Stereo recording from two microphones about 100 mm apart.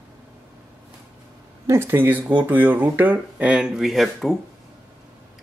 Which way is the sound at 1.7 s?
20° right (ahead or behind).